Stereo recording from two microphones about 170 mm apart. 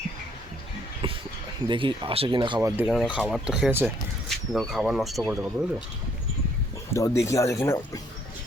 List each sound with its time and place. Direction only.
1.0 s a sound: 30° right (ahead or behind)
1.6 s speech: 30° right (ahead or behind)
2.6 s speech: 15° right (ahead or behind)
2.8 s speech: 5° right (ahead or behind)
4.3 s speech: centre (ahead or behind)
6.9 s speech: 15° left (ahead or behind)